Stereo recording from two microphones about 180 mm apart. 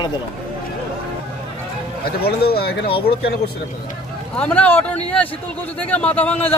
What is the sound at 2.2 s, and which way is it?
Speech, 60° left (ahead or behind).